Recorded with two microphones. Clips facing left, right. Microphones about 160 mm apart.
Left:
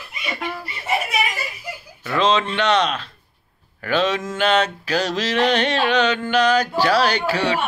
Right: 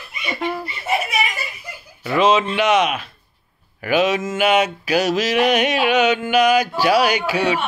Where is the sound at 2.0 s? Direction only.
10° right (ahead or behind).